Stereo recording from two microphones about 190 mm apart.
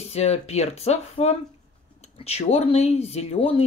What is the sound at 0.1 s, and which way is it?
Speech, 35° left (ahead or behind).